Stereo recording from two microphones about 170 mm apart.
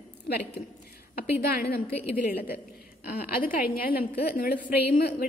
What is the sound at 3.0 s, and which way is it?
A woman's voice, 60° left (ahead or behind).